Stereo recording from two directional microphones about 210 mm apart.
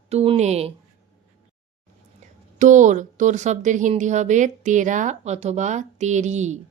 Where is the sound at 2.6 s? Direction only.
35° right (ahead or behind).